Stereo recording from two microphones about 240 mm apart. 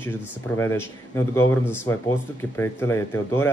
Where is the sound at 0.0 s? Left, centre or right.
Centre.